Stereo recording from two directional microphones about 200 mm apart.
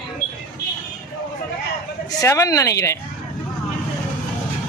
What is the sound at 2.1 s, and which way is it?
Speech, 15° left (ahead or behind).